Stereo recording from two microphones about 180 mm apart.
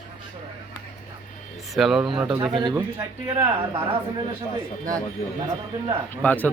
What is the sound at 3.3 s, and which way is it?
Speech, 20° right (ahead or behind).